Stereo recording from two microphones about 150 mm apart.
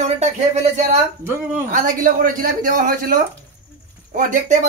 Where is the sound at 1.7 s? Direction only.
60° right (ahead or behind).